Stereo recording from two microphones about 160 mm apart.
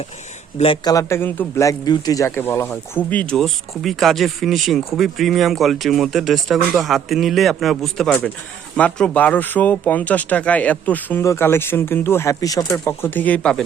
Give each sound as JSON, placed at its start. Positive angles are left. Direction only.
{"t": 0.6, "sound": "speech", "side_deg": 35}
{"t": 0.9, "sound": "a man's voice", "side_deg": 15}